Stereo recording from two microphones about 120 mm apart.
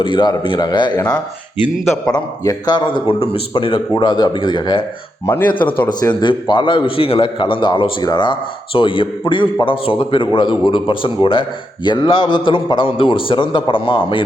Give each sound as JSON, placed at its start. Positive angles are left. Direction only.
{"t": 0.0, "sound": "speech", "side_deg": 40}
{"t": 1.8, "sound": "a man's voice", "side_deg": -5}
{"t": 2.4, "sound": "a man's voice", "side_deg": 30}